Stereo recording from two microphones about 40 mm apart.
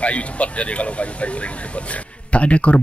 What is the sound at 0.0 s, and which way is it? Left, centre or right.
Speech, left.